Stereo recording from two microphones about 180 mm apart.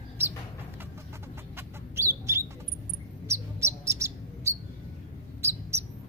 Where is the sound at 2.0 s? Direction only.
15° right (ahead or behind).